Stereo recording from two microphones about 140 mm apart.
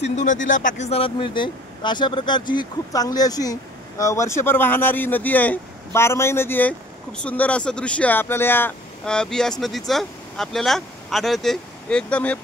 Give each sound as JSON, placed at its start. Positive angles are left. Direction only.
{"t": 0.0, "sound": "speech", "side_deg": 55}